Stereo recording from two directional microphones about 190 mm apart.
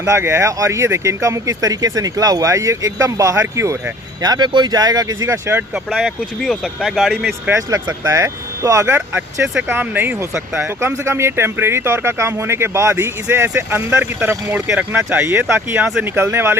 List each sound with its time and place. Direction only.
0.0 s speech: 15° right (ahead or behind)
5.9 s speech: centre (ahead or behind)
7.5 s speech: 15° right (ahead or behind)